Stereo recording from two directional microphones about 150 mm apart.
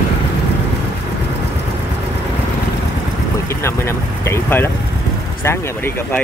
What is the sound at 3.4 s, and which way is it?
Vehicle, 20° left (ahead or behind).